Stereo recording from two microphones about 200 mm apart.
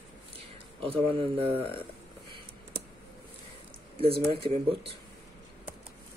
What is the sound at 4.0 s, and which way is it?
Speech, 30° right (ahead or behind).